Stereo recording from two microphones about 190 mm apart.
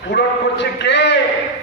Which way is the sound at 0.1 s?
65° left (ahead or behind).